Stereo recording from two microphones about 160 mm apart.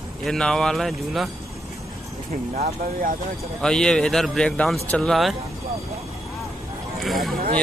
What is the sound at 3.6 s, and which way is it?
Speech, 5° left (ahead or behind).